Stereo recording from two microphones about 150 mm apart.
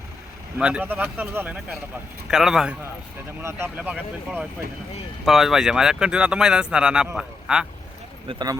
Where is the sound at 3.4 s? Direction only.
15° right (ahead or behind).